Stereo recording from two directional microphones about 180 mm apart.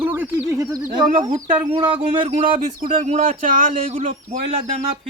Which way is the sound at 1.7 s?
30° right (ahead or behind).